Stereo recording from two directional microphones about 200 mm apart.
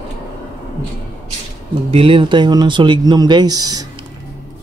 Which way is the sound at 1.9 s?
25° right (ahead or behind).